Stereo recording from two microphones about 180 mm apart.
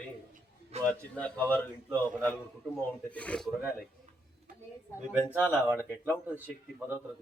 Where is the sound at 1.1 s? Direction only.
10° left (ahead or behind).